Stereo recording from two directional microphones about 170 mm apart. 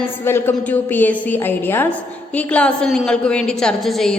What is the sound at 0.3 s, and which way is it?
A woman's voice, 15° left (ahead or behind).